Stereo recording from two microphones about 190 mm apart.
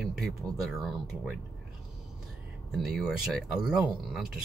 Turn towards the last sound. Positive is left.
turn(degrees=0)  # may be behind; listen again after turning